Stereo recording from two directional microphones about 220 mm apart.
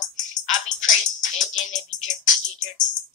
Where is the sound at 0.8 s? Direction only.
35° left (ahead or behind).